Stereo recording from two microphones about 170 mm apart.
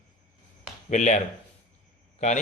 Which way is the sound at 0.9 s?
45° left (ahead or behind).